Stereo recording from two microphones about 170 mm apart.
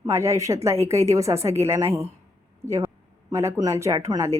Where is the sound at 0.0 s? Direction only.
15° right (ahead or behind).